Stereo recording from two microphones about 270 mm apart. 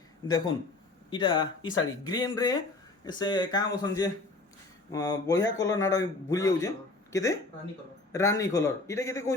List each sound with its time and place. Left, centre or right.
0.3 s a man's voice: centre